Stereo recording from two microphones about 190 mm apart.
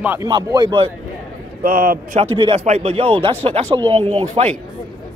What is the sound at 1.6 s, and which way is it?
Speech, 50° right (ahead or behind).